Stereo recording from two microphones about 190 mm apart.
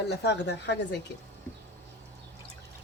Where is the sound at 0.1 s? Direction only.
60° left (ahead or behind).